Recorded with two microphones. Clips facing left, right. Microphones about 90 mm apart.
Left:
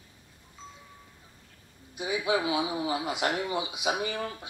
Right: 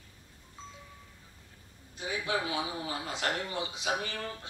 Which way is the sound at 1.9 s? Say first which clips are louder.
Left 5 dB; 15° left (ahead or behind).